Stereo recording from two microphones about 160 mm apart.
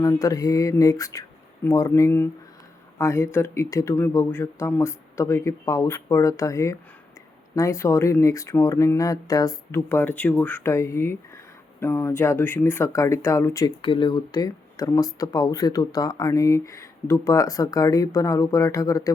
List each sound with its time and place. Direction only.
0.0 s speech: 20° left (ahead or behind)
13.8 s speech: 30° left (ahead or behind)